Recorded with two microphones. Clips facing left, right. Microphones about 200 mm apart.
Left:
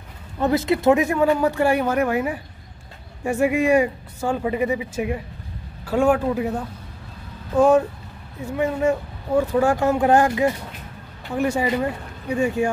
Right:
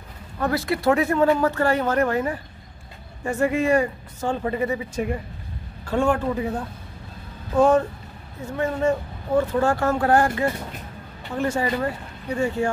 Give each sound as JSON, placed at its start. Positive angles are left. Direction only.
{"t": 0.4, "sound": "speech", "side_deg": 20}
{"t": 8.5, "sound": "speech", "side_deg": 10}